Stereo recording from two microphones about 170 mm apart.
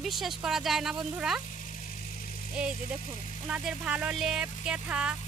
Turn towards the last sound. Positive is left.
turn(degrees=-5)  # may be behind; listen again after turning